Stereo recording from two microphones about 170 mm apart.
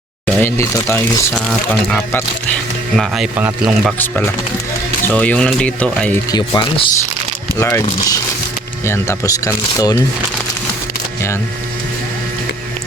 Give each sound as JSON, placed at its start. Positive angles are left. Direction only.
{"t": 0.3, "sound": "speech", "side_deg": 15}
{"t": 1.3, "sound": "speech", "side_deg": 5}
{"t": 3.9, "sound": "speech", "side_deg": 10}
{"t": 6.3, "sound": "speech", "side_deg": 25}